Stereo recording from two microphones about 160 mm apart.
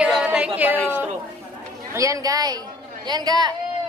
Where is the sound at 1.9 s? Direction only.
20° right (ahead or behind).